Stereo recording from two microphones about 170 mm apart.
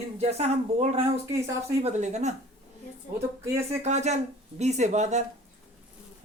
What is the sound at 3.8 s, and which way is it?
Speech, 40° right (ahead or behind).